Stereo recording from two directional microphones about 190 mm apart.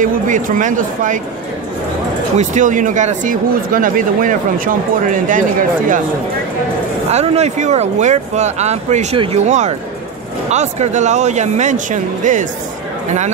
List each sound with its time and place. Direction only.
0.0 s speech: 45° right (ahead or behind)
2.3 s speech: 40° right (ahead or behind)
7.1 s speech: 35° right (ahead or behind)